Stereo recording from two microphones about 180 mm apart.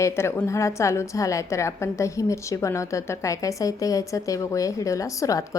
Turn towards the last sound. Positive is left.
turn(degrees=20)  # may be behind; listen again after turning